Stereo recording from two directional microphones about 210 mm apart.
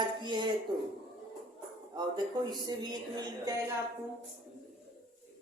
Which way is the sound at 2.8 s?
20° right (ahead or behind).